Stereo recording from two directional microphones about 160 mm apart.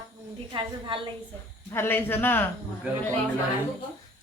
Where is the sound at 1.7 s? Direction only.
15° left (ahead or behind).